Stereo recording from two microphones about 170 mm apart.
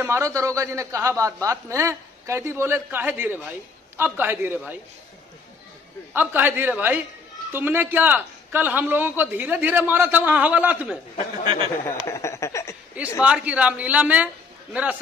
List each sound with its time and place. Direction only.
0.0 s a man's voice: 15° right (ahead or behind)
6.1 s a man's voice: 10° right (ahead or behind)
11.4 s speech: 30° right (ahead or behind)
12.1 s speech: 15° left (ahead or behind)
13.2 s a man's voice: 10° right (ahead or behind)